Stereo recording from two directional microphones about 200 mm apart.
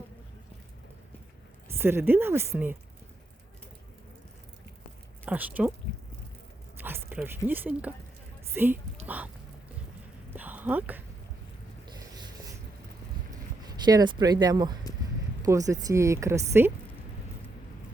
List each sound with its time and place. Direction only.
1.7 s speech: 10° right (ahead or behind)
5.2 s speech: 10° right (ahead or behind)
6.7 s a sound: 10° right (ahead or behind)
7.2 s speech: 10° right (ahead or behind)
10.3 s clip-clop: 10° right (ahead or behind)
13.7 s speech: 20° right (ahead or behind)